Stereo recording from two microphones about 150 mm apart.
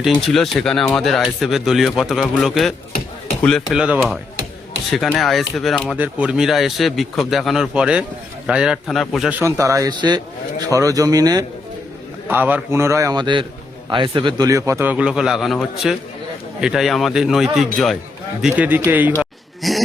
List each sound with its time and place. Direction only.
0.0 s speech: centre (ahead or behind)
3.8 s speech: 5° right (ahead or behind)
6.0 s speech: 10° right (ahead or behind)
9.4 s a man's voice: 20° right (ahead or behind)
12.3 s a man's voice: 10° right (ahead or behind); by 14.4 s 35° right (ahead or behind)
14.4 s speech: 20° right (ahead or behind)
19.2 s a sound: centre (ahead or behind)